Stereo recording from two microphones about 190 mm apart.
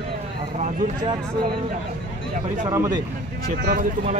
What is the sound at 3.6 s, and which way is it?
Speech, 45° right (ahead or behind).